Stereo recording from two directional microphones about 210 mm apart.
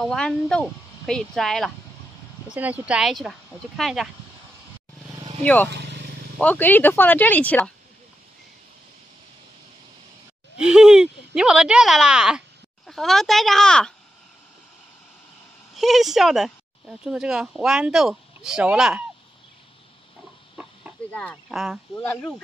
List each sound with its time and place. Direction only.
0.0 s speech: centre (ahead or behind)
5.4 s speech: 5° left (ahead or behind)
5.7 s vehicle: 55° right (ahead or behind)
6.3 s speech: 5° left (ahead or behind)
10.6 s speech: 5° right (ahead or behind)
15.7 s speech: centre (ahead or behind)
21.1 s speech: 5° left (ahead or behind)
21.5 s speech: 5° right (ahead or behind)
21.9 s speech: 10° left (ahead or behind)